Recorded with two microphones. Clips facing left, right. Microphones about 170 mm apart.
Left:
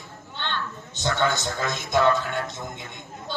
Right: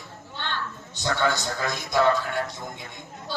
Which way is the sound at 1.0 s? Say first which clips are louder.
Left 1 dB; 20° left (ahead or behind).